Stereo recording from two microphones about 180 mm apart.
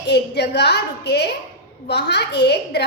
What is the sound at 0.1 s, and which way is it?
A woman's voice, 65° left (ahead or behind).